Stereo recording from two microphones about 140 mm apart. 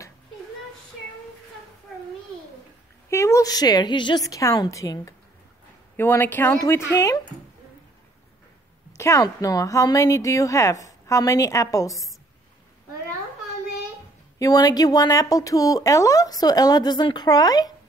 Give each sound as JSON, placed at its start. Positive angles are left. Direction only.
{"t": 3.1, "sound": "a woman's voice", "side_deg": 20}
{"t": 8.9, "sound": "speech", "side_deg": 20}
{"t": 14.4, "sound": "speech", "side_deg": 25}